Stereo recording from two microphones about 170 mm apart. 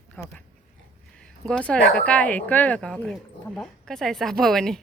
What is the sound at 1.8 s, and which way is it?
Speech, 60° left (ahead or behind).